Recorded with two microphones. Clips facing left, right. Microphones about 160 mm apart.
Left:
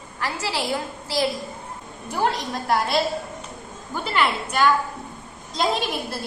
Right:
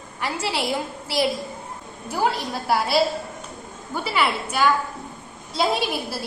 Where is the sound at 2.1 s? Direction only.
5° right (ahead or behind).